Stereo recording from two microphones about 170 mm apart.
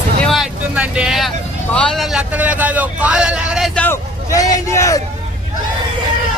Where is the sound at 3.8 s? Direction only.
15° left (ahead or behind).